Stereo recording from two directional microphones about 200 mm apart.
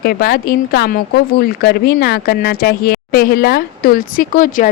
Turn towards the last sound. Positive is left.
turn(degrees=45)  # may be behind; listen again after turning